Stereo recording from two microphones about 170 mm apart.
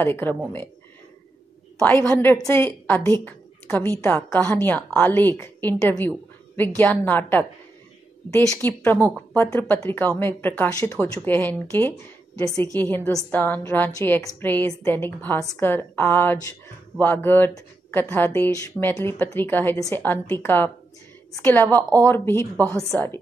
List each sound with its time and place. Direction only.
0.0 s speech: 15° left (ahead or behind)
1.8 s a woman's voice: 5° left (ahead or behind)